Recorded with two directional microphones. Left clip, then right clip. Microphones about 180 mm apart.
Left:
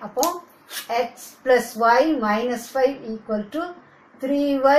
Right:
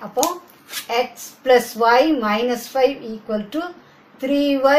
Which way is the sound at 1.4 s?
10° right (ahead or behind).